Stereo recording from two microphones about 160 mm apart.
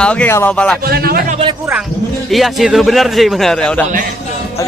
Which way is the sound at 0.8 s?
75° right (ahead or behind).